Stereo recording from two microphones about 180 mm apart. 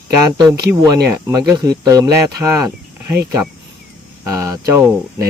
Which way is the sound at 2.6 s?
15° right (ahead or behind).